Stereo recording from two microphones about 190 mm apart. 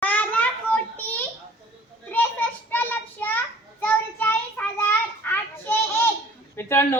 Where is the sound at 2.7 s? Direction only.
10° left (ahead or behind).